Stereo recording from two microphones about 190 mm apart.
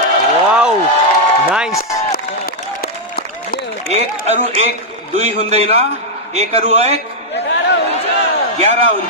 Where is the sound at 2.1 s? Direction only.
50° left (ahead or behind).